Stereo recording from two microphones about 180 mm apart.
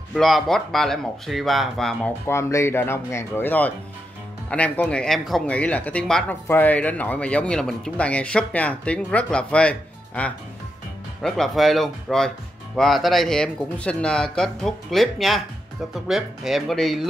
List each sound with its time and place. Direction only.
0.1 s a man's voice: centre (ahead or behind)
2.2 s a man's voice: 15° left (ahead or behind)